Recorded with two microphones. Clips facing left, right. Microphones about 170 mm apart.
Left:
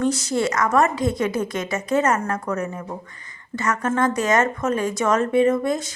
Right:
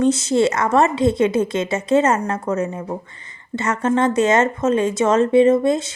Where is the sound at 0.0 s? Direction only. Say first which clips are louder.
Right 5 dB; 25° right (ahead or behind).